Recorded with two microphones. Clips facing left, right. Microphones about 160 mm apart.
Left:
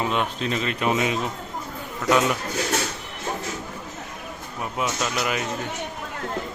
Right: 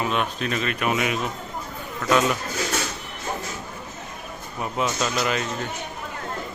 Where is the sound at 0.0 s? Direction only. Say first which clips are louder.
Even; 20° left (ahead or behind).